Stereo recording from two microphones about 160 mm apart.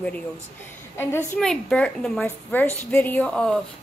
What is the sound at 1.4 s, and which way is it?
A woman's voice, 5° left (ahead or behind).